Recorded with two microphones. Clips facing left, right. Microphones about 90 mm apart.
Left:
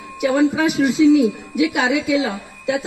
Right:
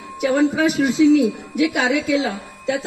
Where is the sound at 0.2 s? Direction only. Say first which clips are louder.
Left 1 dB; 10° left (ahead or behind).